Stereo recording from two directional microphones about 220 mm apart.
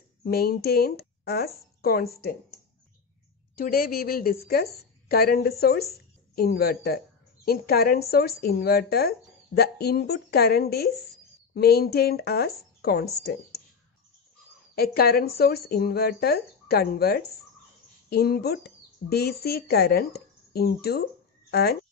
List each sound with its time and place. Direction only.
0.2 s speech: 45° left (ahead or behind)
3.5 s a woman's voice: 40° left (ahead or behind)
14.8 s speech: 45° left (ahead or behind)